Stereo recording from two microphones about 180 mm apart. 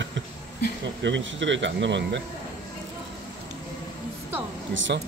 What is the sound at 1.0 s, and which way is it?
Speech, 90° right.